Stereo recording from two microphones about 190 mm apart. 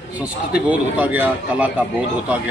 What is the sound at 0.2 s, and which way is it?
A man's voice, 5° right (ahead or behind).